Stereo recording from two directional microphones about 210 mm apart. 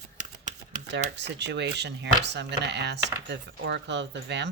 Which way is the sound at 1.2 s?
55° right (ahead or behind).